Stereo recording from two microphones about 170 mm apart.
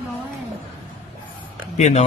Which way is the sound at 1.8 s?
40° left (ahead or behind).